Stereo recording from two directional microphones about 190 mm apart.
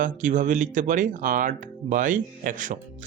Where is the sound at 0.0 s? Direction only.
45° right (ahead or behind).